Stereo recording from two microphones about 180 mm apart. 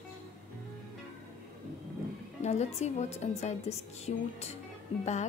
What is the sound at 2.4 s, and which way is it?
A woman's voice, 35° left (ahead or behind).